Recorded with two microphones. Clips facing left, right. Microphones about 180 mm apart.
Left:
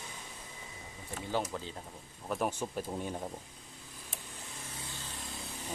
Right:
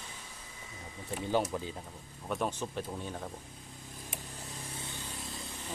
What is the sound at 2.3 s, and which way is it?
Speech, 10° left (ahead or behind).